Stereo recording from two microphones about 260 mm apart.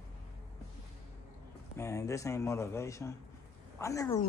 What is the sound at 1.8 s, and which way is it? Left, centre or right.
Speech, centre.